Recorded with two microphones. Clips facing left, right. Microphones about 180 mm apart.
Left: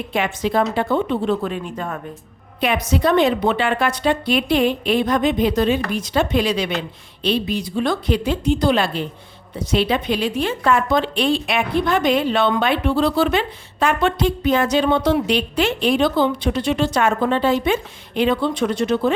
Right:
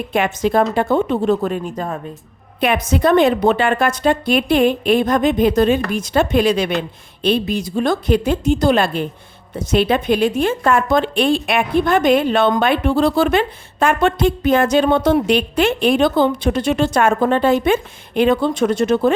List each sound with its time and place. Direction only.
0.1 s speech: 50° right (ahead or behind)
2.6 s speech: 50° right (ahead or behind)